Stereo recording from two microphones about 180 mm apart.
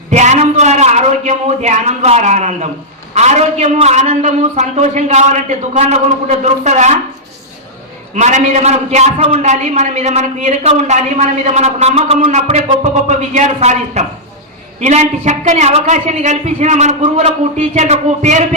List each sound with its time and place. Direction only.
0.1 s a sound: 40° right (ahead or behind)
3.2 s a man's voice: 40° right (ahead or behind)
8.1 s a man's voice: 40° right (ahead or behind)